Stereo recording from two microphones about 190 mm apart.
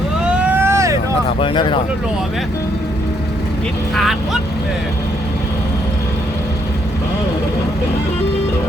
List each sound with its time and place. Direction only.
0.4 s vehicle: 10° right (ahead or behind)
1.4 s speech: 25° left (ahead or behind)